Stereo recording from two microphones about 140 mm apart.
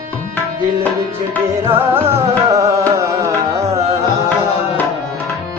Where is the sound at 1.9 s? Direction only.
20° right (ahead or behind).